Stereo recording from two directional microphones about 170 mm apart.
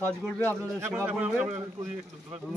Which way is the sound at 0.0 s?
10° left (ahead or behind).